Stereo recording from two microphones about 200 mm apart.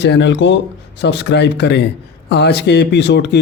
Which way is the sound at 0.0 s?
65° left (ahead or behind).